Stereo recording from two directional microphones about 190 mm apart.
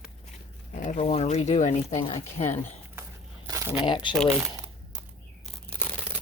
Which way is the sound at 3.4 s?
15° right (ahead or behind).